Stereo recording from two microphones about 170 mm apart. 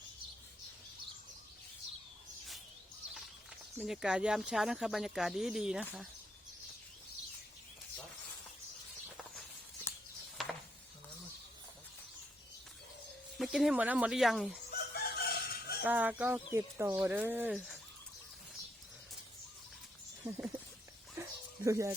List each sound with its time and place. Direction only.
3.8 s speech: 5° right (ahead or behind)
10.4 s chopping: centre (ahead or behind)
13.4 s speech: centre (ahead or behind)
14.7 s chicken: 65° left (ahead or behind)
15.8 s speech: 10° right (ahead or behind)
20.2 s speech: 15° right (ahead or behind)
21.6 s speech: 15° right (ahead or behind)